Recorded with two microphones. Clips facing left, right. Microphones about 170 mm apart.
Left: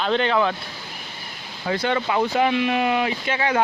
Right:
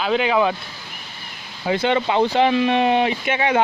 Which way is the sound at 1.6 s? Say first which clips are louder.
Right 3 dB; 20° right (ahead or behind).